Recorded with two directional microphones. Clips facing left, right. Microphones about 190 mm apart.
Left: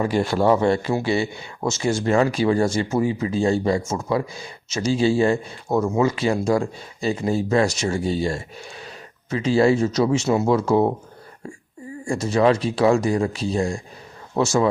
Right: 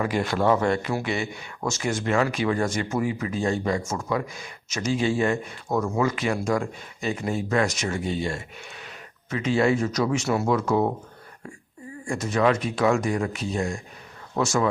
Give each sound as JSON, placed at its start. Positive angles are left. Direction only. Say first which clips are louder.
{"t": 0.0, "sound": "speech", "louder": "left 4 dB", "side_deg": 30}
{"t": 12.0, "sound": "speech", "louder": "left 4 dB", "side_deg": 30}